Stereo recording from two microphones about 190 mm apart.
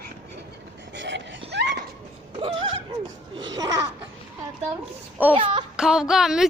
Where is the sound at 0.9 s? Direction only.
70° right (ahead or behind).